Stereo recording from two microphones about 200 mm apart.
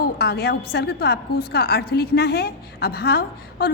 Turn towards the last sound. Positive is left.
turn(degrees=50)  # may be behind; listen again after turning